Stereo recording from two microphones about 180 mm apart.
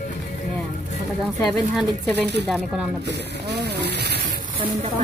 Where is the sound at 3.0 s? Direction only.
70° right (ahead or behind).